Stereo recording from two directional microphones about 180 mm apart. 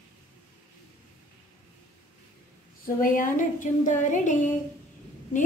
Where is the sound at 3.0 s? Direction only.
50° left (ahead or behind).